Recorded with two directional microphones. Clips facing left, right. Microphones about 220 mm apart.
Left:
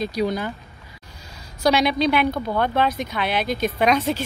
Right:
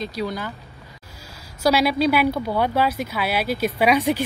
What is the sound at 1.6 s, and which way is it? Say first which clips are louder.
A woman's voice: even; 5° right (ahead or behind).